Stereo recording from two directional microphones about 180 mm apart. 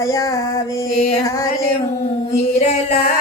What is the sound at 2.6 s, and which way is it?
Music, 35° left (ahead or behind).